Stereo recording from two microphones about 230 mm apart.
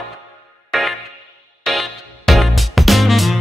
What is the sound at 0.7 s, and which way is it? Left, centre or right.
Music, centre.